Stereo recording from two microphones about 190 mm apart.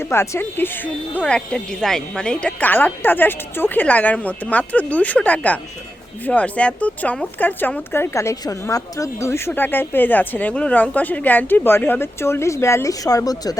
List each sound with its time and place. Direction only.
0.0 s speech: 10° left (ahead or behind)